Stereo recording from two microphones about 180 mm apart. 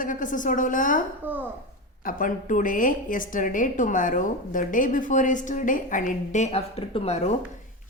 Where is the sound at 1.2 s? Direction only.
10° right (ahead or behind).